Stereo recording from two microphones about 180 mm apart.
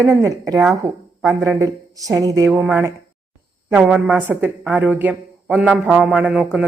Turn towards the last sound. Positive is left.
turn(degrees=-5)  # may be behind; listen again after turning